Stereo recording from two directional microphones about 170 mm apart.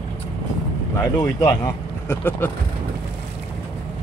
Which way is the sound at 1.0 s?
25° left (ahead or behind).